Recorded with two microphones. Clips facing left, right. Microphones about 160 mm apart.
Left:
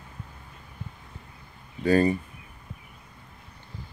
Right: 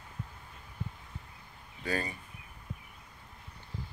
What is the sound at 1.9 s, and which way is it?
Speech, 45° left (ahead or behind).